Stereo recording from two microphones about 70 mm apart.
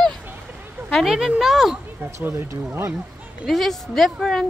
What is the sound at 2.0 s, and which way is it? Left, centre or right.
Speech, right.